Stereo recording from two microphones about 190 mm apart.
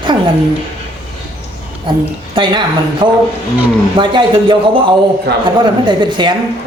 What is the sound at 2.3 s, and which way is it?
Speech, 25° right (ahead or behind).